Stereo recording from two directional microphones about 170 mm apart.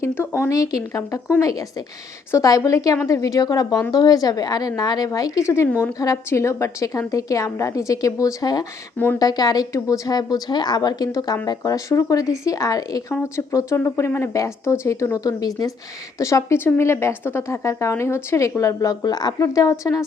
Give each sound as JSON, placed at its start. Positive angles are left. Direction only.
{"t": 0.0, "sound": "a woman's voice", "side_deg": 15}